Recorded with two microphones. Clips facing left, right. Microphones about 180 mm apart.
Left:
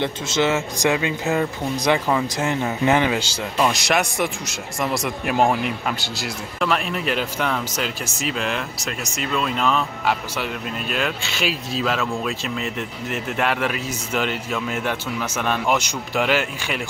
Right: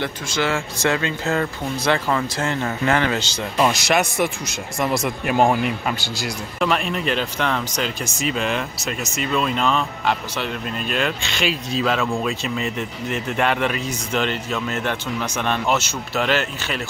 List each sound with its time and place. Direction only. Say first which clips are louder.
0.0 s speech: left 3 dB; 20° left (ahead or behind)
3.5 s speech: right 2 dB; 5° right (ahead or behind)